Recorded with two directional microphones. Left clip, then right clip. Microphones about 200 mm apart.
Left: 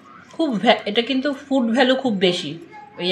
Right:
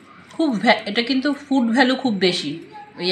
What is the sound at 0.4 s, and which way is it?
Speech, 30° left (ahead or behind).